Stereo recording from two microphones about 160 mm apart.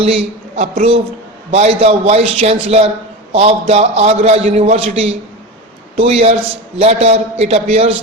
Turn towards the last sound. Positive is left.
turn(degrees=-40)  # may be behind; listen again after turning